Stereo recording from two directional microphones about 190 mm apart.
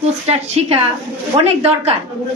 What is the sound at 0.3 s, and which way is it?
A woman's voice, 35° right (ahead or behind).